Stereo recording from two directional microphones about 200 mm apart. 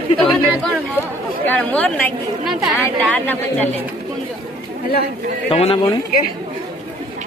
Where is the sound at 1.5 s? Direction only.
5° left (ahead or behind).